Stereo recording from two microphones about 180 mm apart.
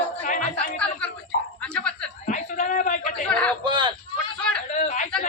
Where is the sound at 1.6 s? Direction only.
5° left (ahead or behind).